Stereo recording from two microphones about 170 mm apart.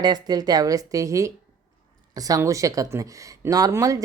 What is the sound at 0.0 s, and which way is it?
Speech, 25° right (ahead or behind).